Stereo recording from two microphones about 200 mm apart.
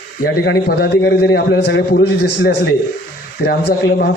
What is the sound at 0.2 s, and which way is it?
A man's voice, 55° left (ahead or behind).